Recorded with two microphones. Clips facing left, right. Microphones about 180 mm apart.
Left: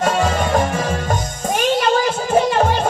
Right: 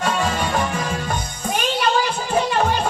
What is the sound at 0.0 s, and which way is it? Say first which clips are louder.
Music: left 4 dB; 45° left (ahead or behind).